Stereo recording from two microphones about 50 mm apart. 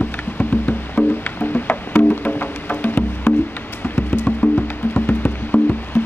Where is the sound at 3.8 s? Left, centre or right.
Left.